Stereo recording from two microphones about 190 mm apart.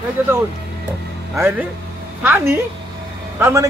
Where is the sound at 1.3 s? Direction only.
15° right (ahead or behind).